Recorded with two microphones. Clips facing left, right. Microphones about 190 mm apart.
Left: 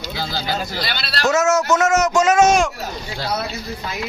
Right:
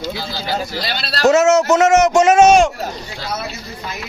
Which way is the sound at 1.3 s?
25° right (ahead or behind).